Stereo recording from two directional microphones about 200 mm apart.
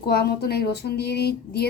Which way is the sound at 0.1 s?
55° left (ahead or behind).